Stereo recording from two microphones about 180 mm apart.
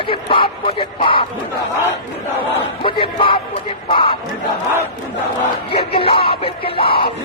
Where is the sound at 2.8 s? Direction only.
30° left (ahead or behind).